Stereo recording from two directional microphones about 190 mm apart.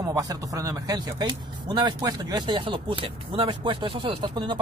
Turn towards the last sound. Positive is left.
turn(degrees=-25)  # may be behind; listen again after turning